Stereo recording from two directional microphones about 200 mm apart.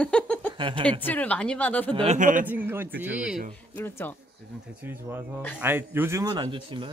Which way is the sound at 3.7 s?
10° left (ahead or behind).